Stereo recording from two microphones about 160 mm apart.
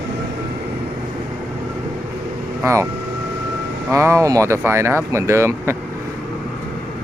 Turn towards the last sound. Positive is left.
turn(degrees=-15)  # may be behind; listen again after turning